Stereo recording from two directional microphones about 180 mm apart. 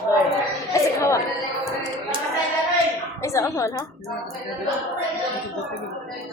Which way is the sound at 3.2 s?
15° left (ahead or behind).